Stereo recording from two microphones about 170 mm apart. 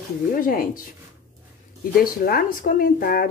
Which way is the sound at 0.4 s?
55° left (ahead or behind).